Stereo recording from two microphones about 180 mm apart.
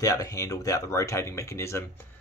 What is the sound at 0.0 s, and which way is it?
Speech, 20° left (ahead or behind).